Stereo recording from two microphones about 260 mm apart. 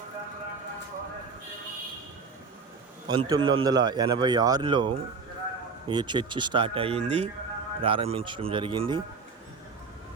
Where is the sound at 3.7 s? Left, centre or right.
Centre.